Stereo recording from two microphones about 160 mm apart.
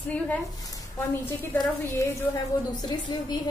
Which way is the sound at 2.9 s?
30° left (ahead or behind).